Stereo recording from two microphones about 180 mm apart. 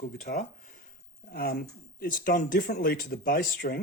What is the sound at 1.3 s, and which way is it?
Speech, 55° left (ahead or behind).